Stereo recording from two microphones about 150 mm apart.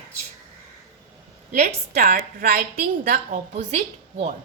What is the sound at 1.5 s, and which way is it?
A woman's voice, 55° right (ahead or behind).